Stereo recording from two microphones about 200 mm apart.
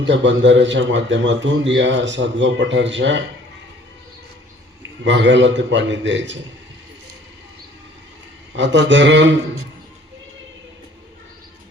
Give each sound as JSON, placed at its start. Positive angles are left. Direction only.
{"t": 0.0, "sound": "a man's voice", "side_deg": -65}
{"t": 4.8, "sound": "a man's voice", "side_deg": -65}
{"t": 8.5, "sound": "a man's voice", "side_deg": -60}